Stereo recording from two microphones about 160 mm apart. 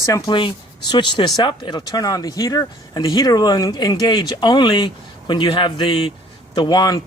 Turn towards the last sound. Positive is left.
turn(degrees=25)  # may be behind; listen again after turning